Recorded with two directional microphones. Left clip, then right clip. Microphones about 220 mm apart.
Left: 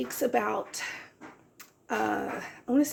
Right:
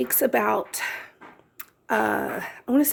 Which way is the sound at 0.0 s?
55° right (ahead or behind).